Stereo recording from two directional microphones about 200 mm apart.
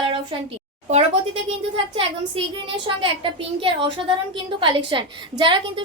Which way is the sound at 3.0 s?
25° right (ahead or behind).